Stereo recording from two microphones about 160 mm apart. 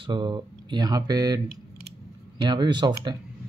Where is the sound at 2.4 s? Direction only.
30° right (ahead or behind).